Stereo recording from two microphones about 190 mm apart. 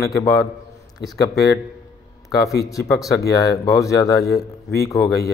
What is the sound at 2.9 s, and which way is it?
Speech, 15° left (ahead or behind).